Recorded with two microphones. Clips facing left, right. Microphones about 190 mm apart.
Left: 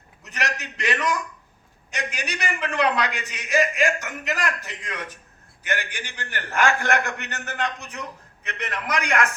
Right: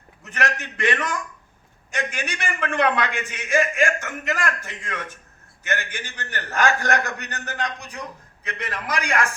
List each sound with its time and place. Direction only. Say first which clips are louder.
0.3 s a man's voice: right 3 dB; 50° right (ahead or behind); by 9.3 s 30° right (ahead or behind)